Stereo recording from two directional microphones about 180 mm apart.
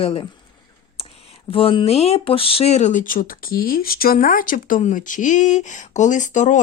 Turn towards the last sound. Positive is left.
turn(degrees=45)  # may be behind; listen again after turning